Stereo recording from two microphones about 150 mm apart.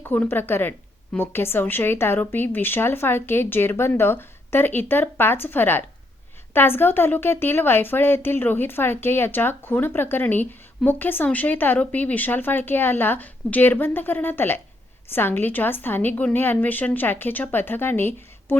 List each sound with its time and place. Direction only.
0.0 s speech: 15° left (ahead or behind)